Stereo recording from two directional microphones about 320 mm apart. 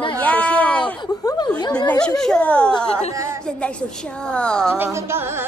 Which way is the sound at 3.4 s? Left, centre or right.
Centre.